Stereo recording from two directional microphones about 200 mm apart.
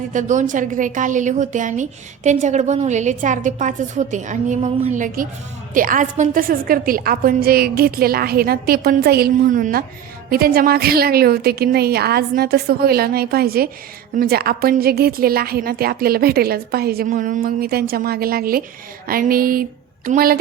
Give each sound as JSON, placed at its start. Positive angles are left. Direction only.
{"t": 0.1, "sound": "a woman's voice", "side_deg": -40}